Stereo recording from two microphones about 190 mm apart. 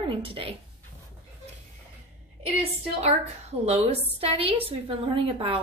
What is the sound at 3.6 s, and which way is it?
A woman's voice, 35° right (ahead or behind).